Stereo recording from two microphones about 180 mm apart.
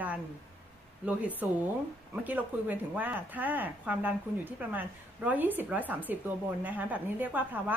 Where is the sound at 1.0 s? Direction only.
10° right (ahead or behind).